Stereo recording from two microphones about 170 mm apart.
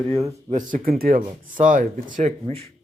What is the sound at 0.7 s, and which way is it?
Speech, 60° right (ahead or behind).